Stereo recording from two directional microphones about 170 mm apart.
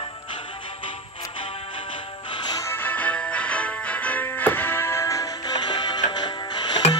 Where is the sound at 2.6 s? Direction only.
10° left (ahead or behind).